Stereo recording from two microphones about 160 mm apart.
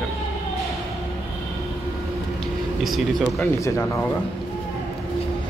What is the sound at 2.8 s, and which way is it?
Speech, centre (ahead or behind).